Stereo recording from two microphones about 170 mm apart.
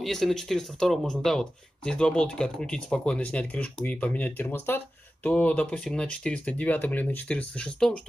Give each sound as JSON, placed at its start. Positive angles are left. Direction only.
{"t": 0.0, "sound": "speech", "side_deg": 0}